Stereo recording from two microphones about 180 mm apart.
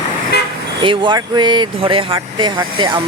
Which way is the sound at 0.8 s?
25° right (ahead or behind).